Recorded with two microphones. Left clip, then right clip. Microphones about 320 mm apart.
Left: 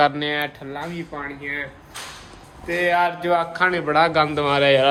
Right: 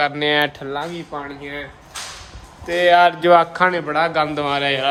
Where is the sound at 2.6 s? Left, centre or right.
Right.